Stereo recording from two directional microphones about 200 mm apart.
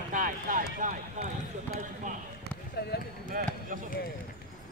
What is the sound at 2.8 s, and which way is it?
Speech, 55° left (ahead or behind).